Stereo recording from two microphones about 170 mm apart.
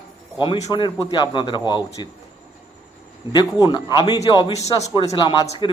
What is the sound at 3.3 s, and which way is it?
A man's voice, 25° left (ahead or behind).